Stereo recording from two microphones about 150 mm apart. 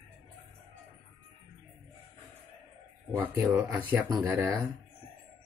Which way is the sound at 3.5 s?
15° right (ahead or behind).